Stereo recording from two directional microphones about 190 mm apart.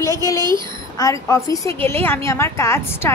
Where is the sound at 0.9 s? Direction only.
15° left (ahead or behind).